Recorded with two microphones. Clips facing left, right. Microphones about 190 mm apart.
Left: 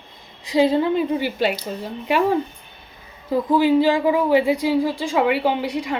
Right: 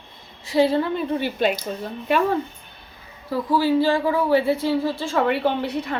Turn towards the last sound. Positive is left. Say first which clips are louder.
# left 2 dB
turn(degrees=10)  # may be behind; listen again after turning